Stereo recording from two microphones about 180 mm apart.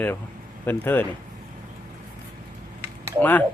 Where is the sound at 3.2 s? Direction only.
10° left (ahead or behind).